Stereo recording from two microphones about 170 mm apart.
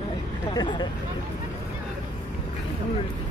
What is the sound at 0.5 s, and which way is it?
Speech, 25° left (ahead or behind).